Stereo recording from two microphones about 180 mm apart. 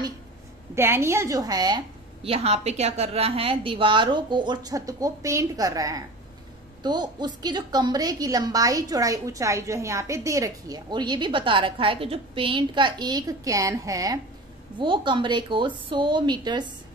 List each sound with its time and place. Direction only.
0.7 s a woman's voice: 15° right (ahead or behind)
2.2 s a woman's voice: 35° right (ahead or behind)